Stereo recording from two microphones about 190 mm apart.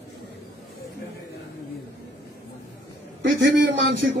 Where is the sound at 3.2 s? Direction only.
75° right (ahead or behind).